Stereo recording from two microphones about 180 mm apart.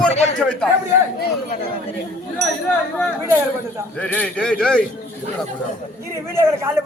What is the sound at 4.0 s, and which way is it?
Speech, 10° left (ahead or behind).